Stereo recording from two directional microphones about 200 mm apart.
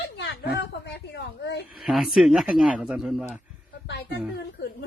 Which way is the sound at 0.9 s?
60° left (ahead or behind).